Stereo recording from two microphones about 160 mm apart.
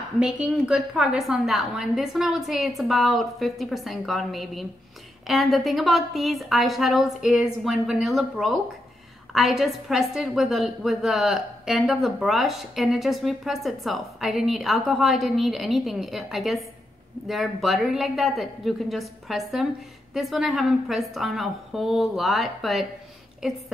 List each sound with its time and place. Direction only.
0.2 s a woman's voice: 5° right (ahead or behind)